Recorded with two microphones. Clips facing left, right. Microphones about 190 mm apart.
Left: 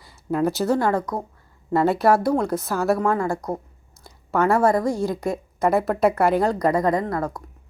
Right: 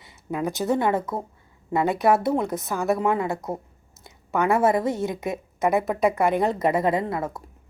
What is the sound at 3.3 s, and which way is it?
Speech, 5° right (ahead or behind).